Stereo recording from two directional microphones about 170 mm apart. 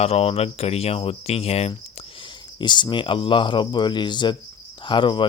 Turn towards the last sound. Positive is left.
turn(degrees=30)  # may be behind; listen again after turning